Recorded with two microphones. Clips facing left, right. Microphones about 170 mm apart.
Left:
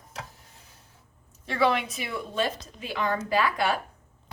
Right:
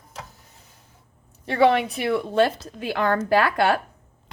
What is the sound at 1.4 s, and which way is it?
A woman's voice, 65° right (ahead or behind).